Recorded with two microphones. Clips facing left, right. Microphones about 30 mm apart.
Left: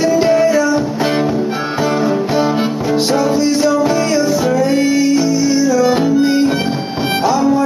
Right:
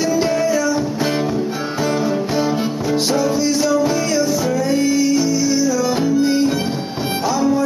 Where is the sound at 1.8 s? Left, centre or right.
Centre.